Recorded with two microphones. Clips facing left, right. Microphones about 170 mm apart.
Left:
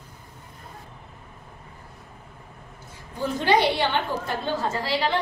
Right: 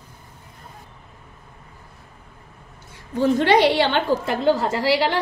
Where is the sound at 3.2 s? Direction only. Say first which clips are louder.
Right 5 dB; 70° right (ahead or behind); by 5.1 s 90° right.